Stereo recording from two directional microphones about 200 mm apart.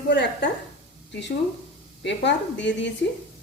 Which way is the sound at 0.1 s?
60° left (ahead or behind).